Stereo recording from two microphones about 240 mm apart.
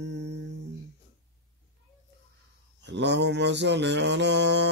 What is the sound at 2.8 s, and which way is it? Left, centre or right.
Mantra, right.